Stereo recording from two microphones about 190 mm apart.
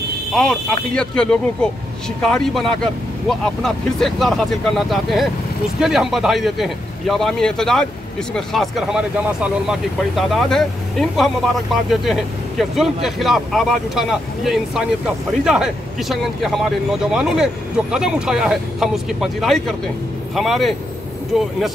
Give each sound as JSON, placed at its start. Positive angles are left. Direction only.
{"t": 0.3, "sound": "speech", "side_deg": 5}